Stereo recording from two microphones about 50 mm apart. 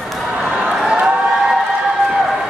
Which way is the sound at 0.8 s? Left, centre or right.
Centre.